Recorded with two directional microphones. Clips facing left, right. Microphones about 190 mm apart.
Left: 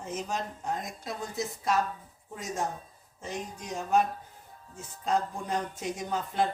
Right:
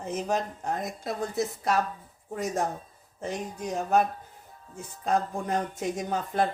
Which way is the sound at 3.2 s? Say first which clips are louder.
Right 5 dB; 60° right (ahead or behind).